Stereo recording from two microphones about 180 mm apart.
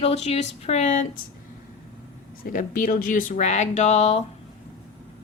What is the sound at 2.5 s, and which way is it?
A woman's voice, 50° left (ahead or behind).